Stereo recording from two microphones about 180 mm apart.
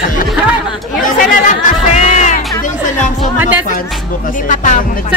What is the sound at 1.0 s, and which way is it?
Chatter, 45° left (ahead or behind).